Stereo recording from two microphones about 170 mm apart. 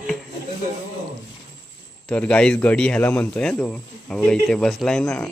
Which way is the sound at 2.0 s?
5° left (ahead or behind).